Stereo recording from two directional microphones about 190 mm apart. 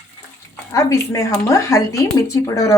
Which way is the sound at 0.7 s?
15° left (ahead or behind).